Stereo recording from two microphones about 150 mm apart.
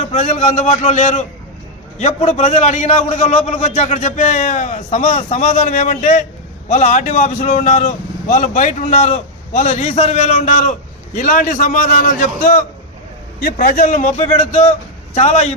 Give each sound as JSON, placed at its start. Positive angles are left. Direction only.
{"t": 0.0, "sound": "speech", "side_deg": 50}
{"t": 13.4, "sound": "speech", "side_deg": 75}